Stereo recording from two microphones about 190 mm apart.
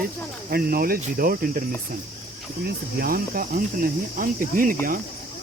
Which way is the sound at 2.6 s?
50° right (ahead or behind).